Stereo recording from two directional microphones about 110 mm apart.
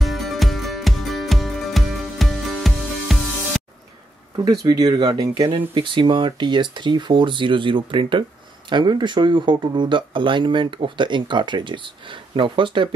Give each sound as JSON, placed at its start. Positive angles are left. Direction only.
{"t": 0.0, "sound": "music", "side_deg": 0}
{"t": 4.5, "sound": "speech", "side_deg": -35}
{"t": 5.8, "sound": "speech", "side_deg": -50}